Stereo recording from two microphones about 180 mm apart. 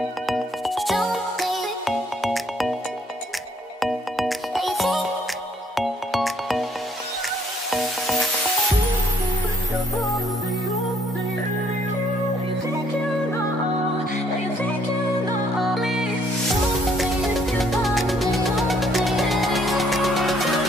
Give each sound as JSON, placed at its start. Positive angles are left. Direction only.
{"t": 0.3, "sound": "music", "side_deg": 0}
{"t": 3.8, "sound": "music", "side_deg": 0}
{"t": 7.7, "sound": "music", "side_deg": 0}
{"t": 15.6, "sound": "music", "side_deg": 0}